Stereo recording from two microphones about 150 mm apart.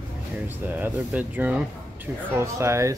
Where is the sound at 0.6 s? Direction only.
10° right (ahead or behind).